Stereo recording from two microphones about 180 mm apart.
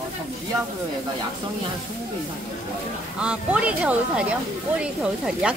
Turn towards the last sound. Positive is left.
turn(degrees=-5)  # may be behind; listen again after turning